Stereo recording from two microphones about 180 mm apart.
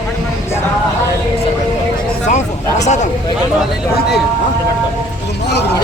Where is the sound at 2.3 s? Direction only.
40° left (ahead or behind).